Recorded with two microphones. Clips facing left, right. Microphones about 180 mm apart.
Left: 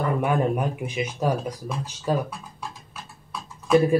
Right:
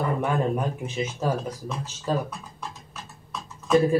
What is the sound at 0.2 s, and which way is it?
Speech, 10° left (ahead or behind).